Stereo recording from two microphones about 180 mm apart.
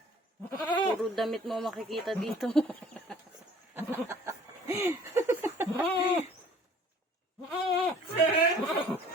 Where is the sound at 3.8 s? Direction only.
15° right (ahead or behind).